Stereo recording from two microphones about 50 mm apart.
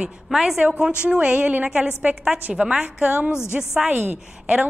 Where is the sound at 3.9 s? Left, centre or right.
Right.